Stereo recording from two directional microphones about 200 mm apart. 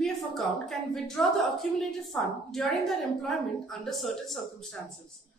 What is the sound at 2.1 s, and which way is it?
A woman's voice, centre (ahead or behind).